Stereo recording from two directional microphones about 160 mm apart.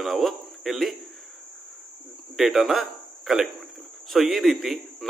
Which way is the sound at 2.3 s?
Centre (ahead or behind).